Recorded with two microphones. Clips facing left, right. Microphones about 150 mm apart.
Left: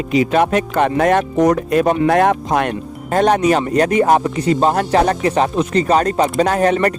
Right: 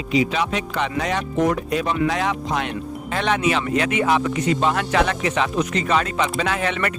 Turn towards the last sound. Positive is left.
turn(degrees=40)  # may be behind; listen again after turning